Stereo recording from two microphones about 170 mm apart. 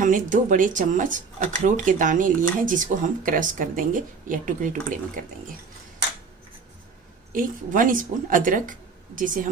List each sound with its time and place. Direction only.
0.0 s speech: 50° right (ahead or behind)
7.3 s speech: 55° right (ahead or behind)